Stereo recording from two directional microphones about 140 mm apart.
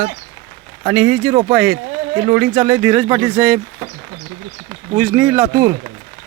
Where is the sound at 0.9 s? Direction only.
10° right (ahead or behind).